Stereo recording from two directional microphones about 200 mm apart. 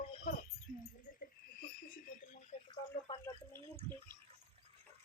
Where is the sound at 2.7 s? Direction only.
20° left (ahead or behind).